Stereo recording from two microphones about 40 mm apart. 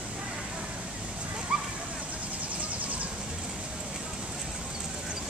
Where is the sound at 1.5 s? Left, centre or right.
Right.